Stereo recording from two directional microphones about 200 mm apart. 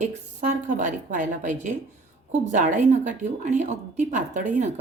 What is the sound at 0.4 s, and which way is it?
A woman's voice, 35° right (ahead or behind).